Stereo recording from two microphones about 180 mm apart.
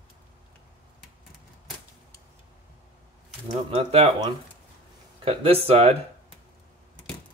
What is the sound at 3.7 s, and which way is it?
Speech, 35° right (ahead or behind).